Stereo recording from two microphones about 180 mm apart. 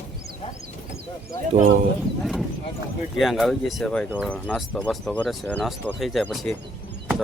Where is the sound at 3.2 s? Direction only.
Centre (ahead or behind).